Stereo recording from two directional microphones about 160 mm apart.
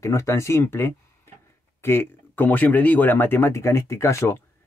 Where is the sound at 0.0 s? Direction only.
15° left (ahead or behind).